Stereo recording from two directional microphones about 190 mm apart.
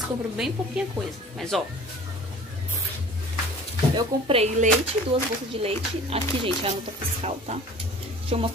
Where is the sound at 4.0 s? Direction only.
30° right (ahead or behind).